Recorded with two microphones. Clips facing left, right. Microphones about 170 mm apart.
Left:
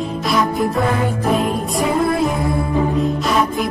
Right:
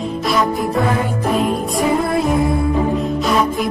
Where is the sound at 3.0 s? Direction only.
Centre (ahead or behind).